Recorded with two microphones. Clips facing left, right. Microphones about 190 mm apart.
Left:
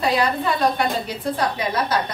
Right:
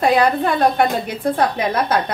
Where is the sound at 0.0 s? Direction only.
50° right (ahead or behind).